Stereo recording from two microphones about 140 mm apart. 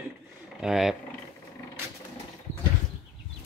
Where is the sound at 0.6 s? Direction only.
5° right (ahead or behind).